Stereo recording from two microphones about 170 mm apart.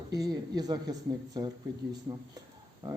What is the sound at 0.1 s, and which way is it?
Speech, 20° right (ahead or behind).